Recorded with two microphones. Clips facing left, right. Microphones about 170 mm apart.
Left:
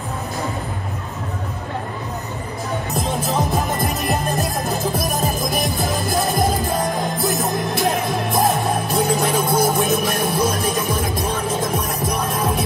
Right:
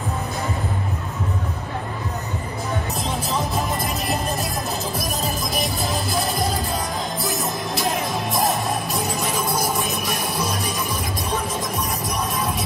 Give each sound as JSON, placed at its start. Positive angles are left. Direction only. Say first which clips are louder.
{"t": 3.2, "sound": "music", "louder": "left 3 dB", "side_deg": 50}